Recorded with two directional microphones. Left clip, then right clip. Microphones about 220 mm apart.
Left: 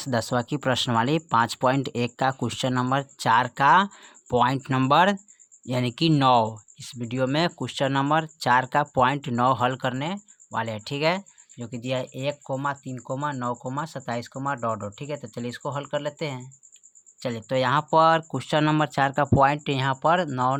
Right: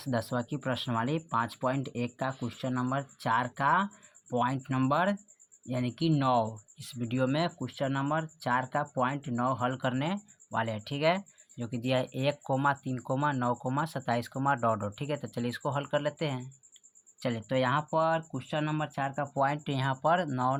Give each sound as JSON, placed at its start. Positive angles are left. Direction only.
{"t": 0.0, "sound": "speech", "side_deg": 25}
{"t": 11.5, "sound": "speech", "side_deg": 10}